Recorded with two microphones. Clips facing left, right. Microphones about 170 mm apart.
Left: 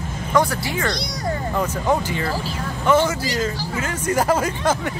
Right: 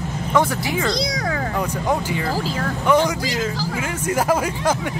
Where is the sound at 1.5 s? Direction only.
10° right (ahead or behind).